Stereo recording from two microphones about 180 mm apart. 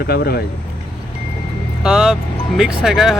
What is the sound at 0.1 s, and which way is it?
Speech, 60° left (ahead or behind).